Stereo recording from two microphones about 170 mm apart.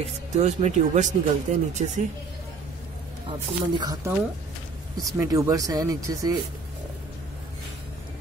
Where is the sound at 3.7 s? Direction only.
25° right (ahead or behind).